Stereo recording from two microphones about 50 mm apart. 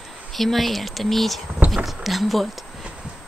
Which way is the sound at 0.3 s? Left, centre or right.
Centre.